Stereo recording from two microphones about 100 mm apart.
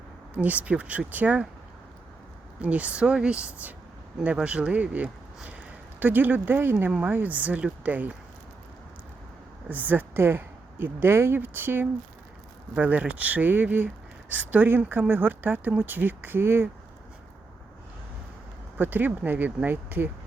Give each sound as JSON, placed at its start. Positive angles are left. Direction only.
{"t": 0.3, "sound": "speech", "side_deg": -15}
{"t": 2.6, "sound": "speech", "side_deg": -15}
{"t": 9.6, "sound": "speech", "side_deg": -15}
{"t": 18.8, "sound": "speech", "side_deg": -20}